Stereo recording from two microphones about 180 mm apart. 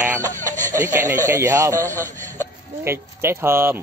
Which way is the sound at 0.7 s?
15° right (ahead or behind).